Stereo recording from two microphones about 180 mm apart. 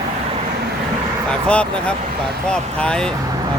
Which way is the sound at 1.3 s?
5° left (ahead or behind).